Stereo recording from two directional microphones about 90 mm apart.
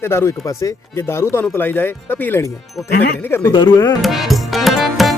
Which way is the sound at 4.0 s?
Centre (ahead or behind).